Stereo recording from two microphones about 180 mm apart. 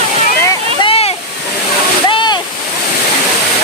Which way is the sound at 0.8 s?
35° left (ahead or behind).